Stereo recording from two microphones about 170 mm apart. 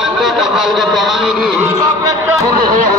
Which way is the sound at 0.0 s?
Centre (ahead or behind).